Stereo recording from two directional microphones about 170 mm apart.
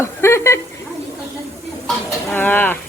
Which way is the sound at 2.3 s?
10° left (ahead or behind).